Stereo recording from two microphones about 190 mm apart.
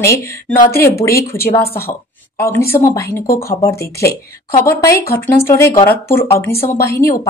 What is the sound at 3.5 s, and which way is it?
A woman's voice, 15° left (ahead or behind).